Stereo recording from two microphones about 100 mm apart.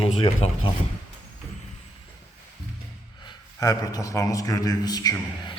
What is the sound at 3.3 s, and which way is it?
A man's voice, 40° left (ahead or behind).